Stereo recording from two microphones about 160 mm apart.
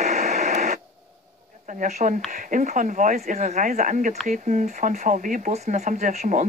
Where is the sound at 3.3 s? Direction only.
45° right (ahead or behind).